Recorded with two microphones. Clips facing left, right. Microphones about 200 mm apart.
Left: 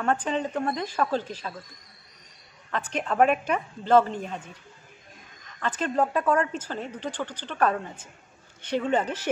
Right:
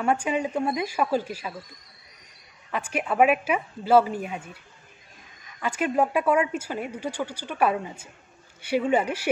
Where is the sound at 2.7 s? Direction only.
10° right (ahead or behind).